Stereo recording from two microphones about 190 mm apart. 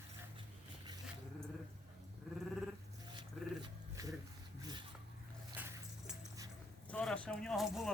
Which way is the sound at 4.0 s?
20° right (ahead or behind).